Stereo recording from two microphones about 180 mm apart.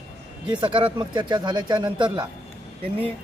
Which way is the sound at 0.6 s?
25° right (ahead or behind).